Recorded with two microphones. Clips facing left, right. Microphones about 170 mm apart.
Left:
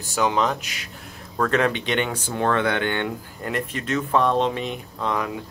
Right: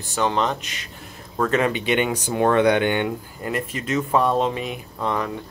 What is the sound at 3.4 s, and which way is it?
Speech, 5° right (ahead or behind).